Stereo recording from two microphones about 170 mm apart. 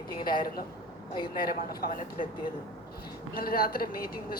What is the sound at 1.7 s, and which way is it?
Speech, 60° left (ahead or behind).